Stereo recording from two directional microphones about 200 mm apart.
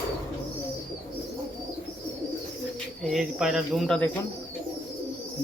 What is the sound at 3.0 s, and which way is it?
Speech, centre (ahead or behind).